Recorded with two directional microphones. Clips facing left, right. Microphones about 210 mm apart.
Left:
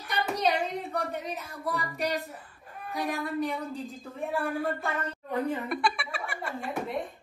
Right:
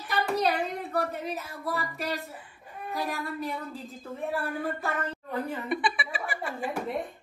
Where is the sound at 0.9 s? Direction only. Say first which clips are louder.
Right 2 dB; centre (ahead or behind).